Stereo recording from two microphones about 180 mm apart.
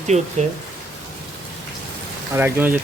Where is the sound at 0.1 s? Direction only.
35° right (ahead or behind).